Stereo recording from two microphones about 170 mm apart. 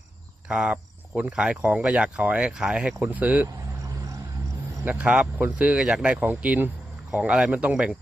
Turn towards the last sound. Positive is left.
turn(degrees=-5)  # may be behind; listen again after turning